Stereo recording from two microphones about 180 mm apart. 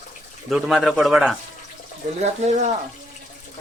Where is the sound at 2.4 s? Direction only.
40° right (ahead or behind).